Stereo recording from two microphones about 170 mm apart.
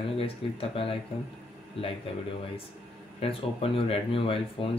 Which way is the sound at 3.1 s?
35° left (ahead or behind).